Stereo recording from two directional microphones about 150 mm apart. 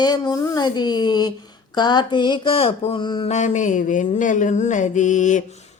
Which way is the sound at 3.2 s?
50° left (ahead or behind).